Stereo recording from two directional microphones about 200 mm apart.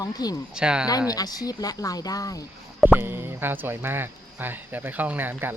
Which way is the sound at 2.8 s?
10° right (ahead or behind).